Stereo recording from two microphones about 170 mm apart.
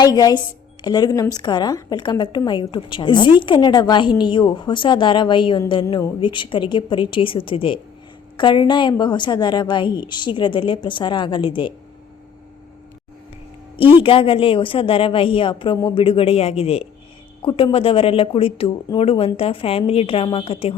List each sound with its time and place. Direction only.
0.0 s a woman's voice: 20° left (ahead or behind)
13.7 s a woman's voice: 30° left (ahead or behind)